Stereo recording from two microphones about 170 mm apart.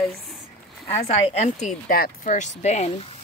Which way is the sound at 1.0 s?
40° left (ahead or behind).